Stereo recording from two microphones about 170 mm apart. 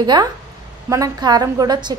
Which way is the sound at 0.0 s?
25° right (ahead or behind).